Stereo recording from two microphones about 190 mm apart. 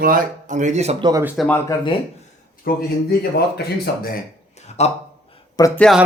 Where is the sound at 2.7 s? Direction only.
50° left (ahead or behind).